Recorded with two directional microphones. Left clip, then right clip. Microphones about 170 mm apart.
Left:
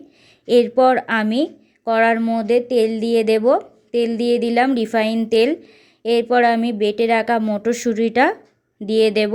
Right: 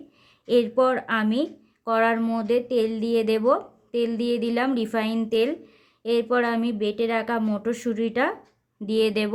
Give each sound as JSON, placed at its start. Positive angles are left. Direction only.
{"t": 0.4, "sound": "a woman's voice", "side_deg": 20}